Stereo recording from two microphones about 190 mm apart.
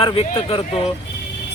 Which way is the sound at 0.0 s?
30° left (ahead or behind).